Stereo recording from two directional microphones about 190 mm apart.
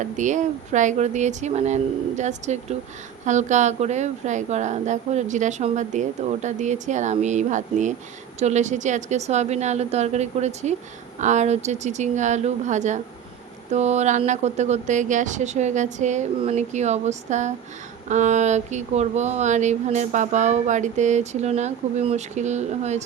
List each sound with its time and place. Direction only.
0.0 s speech: 40° right (ahead or behind)